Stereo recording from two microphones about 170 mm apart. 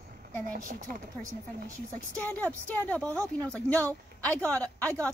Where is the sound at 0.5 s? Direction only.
55° right (ahead or behind).